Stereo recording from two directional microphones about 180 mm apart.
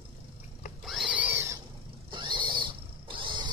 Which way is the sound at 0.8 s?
Centre (ahead or behind).